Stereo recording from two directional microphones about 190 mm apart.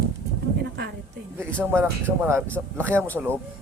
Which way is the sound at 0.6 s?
65° right (ahead or behind).